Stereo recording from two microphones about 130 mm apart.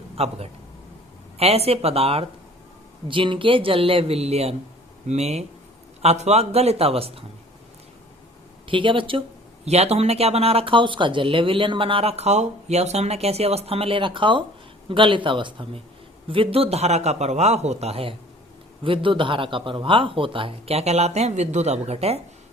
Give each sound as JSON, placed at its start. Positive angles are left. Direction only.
{"t": 0.2, "sound": "speech", "side_deg": -50}
{"t": 1.4, "sound": "a man's voice", "side_deg": -50}
{"t": 8.6, "sound": "speech", "side_deg": -40}
{"t": 9.6, "sound": "a man's voice", "side_deg": -55}